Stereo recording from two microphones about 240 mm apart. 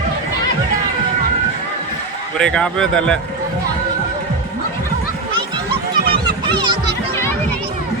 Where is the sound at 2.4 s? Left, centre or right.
Centre.